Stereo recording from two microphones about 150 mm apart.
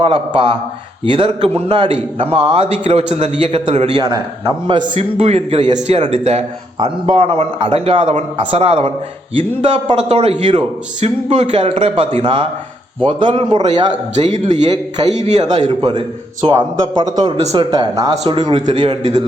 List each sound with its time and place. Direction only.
0.0 s a man's voice: 35° right (ahead or behind)
4.9 s a man's voice: 45° right (ahead or behind)
6.7 s a man's voice: 35° right (ahead or behind)
11.0 s a man's voice: 45° right (ahead or behind)
11.6 s a man's voice: 35° right (ahead or behind)
14.9 s a man's voice: 50° right (ahead or behind)
15.8 s speech: 30° right (ahead or behind)
17.3 s a man's voice: 40° right (ahead or behind)
18.7 s a man's voice: 45° right (ahead or behind)